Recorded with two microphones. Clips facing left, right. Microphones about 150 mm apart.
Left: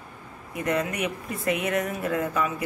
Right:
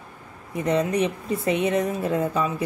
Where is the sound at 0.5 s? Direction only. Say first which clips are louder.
Right 5 dB; 30° right (ahead or behind).